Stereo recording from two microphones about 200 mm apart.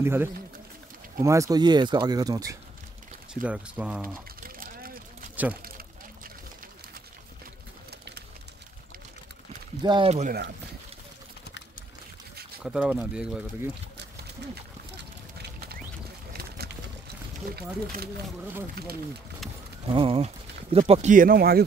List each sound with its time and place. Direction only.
0.0 s speech: 10° right (ahead or behind)
3.4 s speech: 5° right (ahead or behind)
4.4 s a sound: 45° right (ahead or behind)
5.3 s pour: 10° right (ahead or behind)
9.8 s speech: 25° right (ahead or behind)
12.6 s speech: 5° right (ahead or behind)
16.3 s a sound: 50° right (ahead or behind)
19.9 s speech: 25° right (ahead or behind); by 21.6 s 50° right (ahead or behind)